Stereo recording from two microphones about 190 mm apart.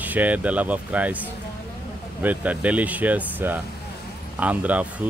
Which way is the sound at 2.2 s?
10° right (ahead or behind).